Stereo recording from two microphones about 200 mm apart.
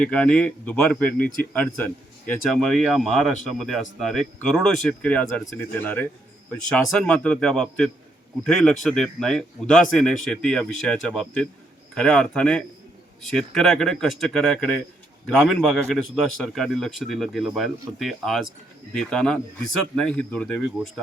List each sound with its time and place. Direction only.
0.0 s a man's voice: 5° left (ahead or behind)